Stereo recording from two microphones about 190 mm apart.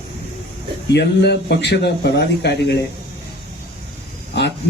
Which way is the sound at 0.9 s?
60° left (ahead or behind).